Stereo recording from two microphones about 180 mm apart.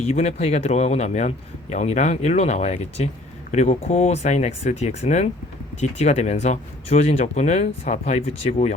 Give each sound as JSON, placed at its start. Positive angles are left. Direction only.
{"t": 0.0, "sound": "speech", "side_deg": 35}